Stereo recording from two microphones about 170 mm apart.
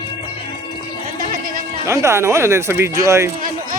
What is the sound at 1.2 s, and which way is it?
Sheep, 50° right (ahead or behind).